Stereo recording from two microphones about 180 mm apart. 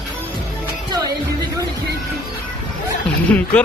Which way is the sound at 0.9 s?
20° right (ahead or behind).